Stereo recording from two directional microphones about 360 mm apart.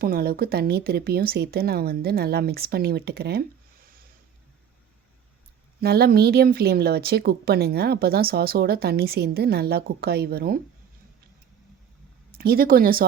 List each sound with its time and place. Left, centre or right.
0.0 s a woman's voice: right
5.8 s a woman's voice: right
12.4 s a woman's voice: right